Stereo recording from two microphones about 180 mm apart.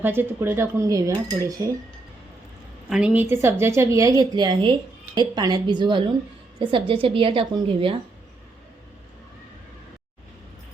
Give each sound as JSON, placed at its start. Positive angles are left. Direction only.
{"t": 0.0, "sound": "speech", "side_deg": -10}
{"t": 2.9, "sound": "a woman's voice", "side_deg": -5}